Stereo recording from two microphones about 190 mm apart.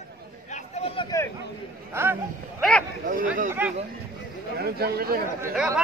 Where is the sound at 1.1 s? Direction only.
15° left (ahead or behind).